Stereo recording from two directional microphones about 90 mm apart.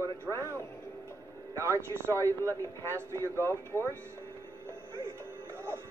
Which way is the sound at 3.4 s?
30° left (ahead or behind).